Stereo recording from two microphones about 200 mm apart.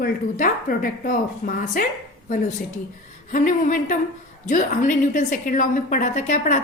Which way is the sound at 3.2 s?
40° left (ahead or behind).